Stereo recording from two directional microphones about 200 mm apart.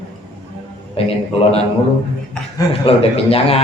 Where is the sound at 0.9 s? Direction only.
30° left (ahead or behind).